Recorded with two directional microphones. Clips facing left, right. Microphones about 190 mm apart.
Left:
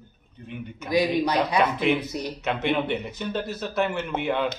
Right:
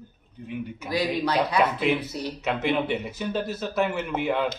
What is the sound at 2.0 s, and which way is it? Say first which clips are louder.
Speech: left 1 dB; 15° left (ahead or behind).